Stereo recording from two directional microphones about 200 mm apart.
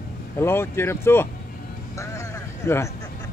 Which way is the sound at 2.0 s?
15° left (ahead or behind).